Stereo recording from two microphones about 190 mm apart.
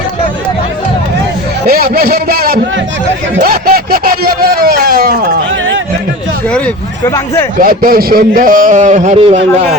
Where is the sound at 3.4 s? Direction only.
50° right (ahead or behind).